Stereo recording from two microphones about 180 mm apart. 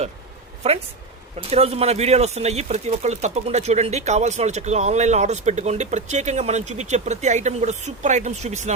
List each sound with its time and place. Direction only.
1.4 s speech: 35° right (ahead or behind)